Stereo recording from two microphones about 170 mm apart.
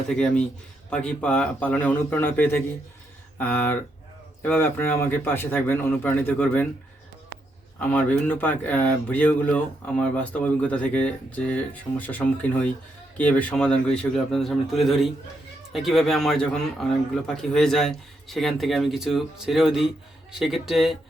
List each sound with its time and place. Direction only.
0.1 s speech: 5° left (ahead or behind)
7.8 s speech: 10° left (ahead or behind)